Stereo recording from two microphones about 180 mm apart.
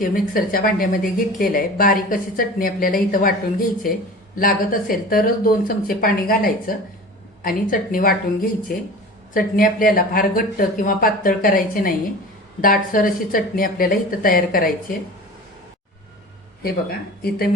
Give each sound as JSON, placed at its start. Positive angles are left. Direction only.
{"t": 0.0, "sound": "a woman's voice", "side_deg": 50}
{"t": 17.2, "sound": "speech", "side_deg": 60}